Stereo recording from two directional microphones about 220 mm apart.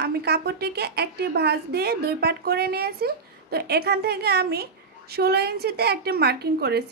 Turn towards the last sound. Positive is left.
turn(degrees=-45)  # may be behind; listen again after turning